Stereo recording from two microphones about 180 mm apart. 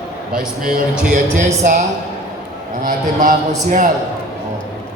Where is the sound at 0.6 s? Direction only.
50° right (ahead or behind).